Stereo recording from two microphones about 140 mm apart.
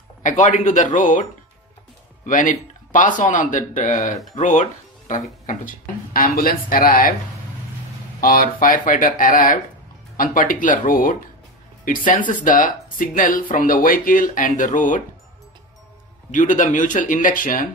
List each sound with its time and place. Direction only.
0.2 s speech: 65° left (ahead or behind)
2.2 s speech: 70° left (ahead or behind)
6.1 s speech: 90° left
8.2 s speech: 90° left; by 15.0 s 70° left (ahead or behind)
16.3 s speech: 65° left (ahead or behind)